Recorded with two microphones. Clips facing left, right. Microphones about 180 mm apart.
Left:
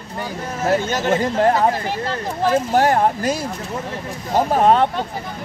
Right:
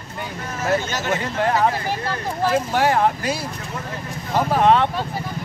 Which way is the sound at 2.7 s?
40° left (ahead or behind).